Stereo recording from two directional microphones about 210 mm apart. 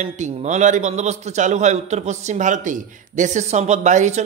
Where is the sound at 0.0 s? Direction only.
35° right (ahead or behind).